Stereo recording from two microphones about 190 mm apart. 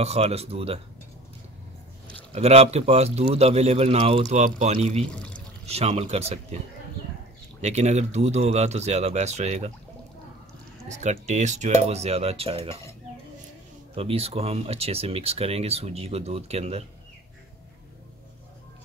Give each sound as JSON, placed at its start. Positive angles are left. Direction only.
{"t": 0.0, "sound": "speech", "side_deg": -35}
{"t": 2.3, "sound": "speech", "side_deg": -30}
{"t": 7.6, "sound": "speech", "side_deg": -35}
{"t": 10.9, "sound": "speech", "side_deg": -40}
{"t": 13.9, "sound": "speech", "side_deg": -30}